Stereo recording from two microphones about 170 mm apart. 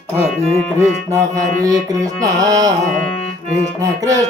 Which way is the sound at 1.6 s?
20° right (ahead or behind).